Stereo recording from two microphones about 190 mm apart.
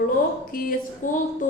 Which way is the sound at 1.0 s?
45° left (ahead or behind).